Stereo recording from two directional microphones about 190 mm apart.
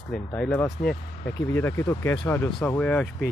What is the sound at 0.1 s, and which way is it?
Speech, 5° left (ahead or behind).